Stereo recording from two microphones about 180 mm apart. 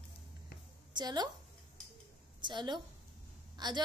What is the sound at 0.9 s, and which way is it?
Speech, 25° right (ahead or behind).